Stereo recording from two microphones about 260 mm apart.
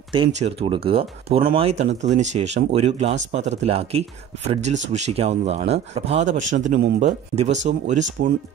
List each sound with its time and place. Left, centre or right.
0.1 s speech: right
6.6 s speech: right
7.0 s speech: right